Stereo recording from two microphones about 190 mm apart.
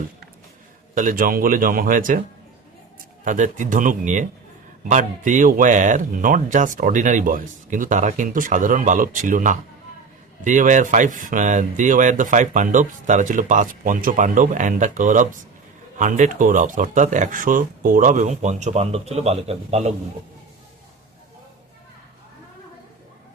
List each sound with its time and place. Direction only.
0.9 s speech: 45° right (ahead or behind)
3.2 s speech: 40° right (ahead or behind)